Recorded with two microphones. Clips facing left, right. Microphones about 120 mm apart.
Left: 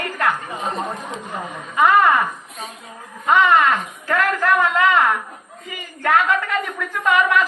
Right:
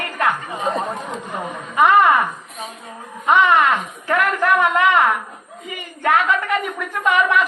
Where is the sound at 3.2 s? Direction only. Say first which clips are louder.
Even; 20° right (ahead or behind).